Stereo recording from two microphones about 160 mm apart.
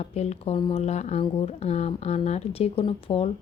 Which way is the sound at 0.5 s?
30° left (ahead or behind).